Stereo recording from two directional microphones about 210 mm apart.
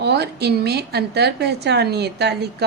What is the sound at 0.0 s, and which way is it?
A woman's voice, 50° right (ahead or behind).